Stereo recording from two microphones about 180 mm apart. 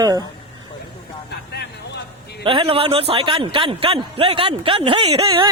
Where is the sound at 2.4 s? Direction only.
30° right (ahead or behind).